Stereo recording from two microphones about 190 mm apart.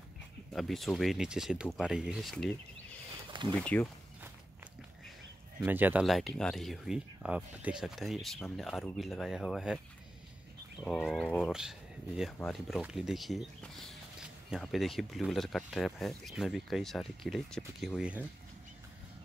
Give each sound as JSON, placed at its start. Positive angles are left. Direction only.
{"t": 0.5, "sound": "speech", "side_deg": 0}
{"t": 3.3, "sound": "a sound", "side_deg": -25}
{"t": 3.6, "sound": "speech", "side_deg": 5}
{"t": 5.6, "sound": "speech", "side_deg": -10}
{"t": 11.0, "sound": "speech", "side_deg": 5}